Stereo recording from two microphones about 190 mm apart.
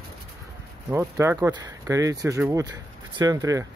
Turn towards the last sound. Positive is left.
turn(degrees=-15)  # may be behind; listen again after turning